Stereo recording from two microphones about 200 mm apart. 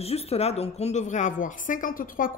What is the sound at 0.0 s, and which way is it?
A woman's voice, 30° left (ahead or behind).